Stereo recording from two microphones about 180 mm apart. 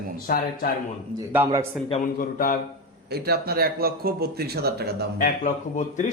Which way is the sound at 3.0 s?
60° right (ahead or behind).